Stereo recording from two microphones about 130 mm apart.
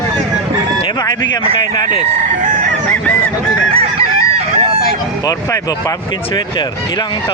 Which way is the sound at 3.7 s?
50° right (ahead or behind).